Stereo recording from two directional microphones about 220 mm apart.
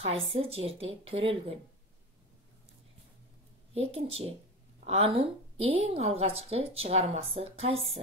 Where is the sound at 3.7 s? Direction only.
25° right (ahead or behind).